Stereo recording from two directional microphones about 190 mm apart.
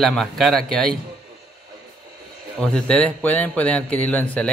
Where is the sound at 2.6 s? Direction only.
5° left (ahead or behind).